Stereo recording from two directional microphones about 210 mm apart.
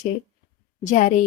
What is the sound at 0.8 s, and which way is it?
Speech, 35° left (ahead or behind).